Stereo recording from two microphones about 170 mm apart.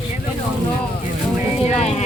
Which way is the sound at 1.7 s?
40° left (ahead or behind).